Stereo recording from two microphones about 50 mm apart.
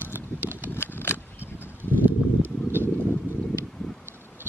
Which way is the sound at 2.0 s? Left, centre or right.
Right.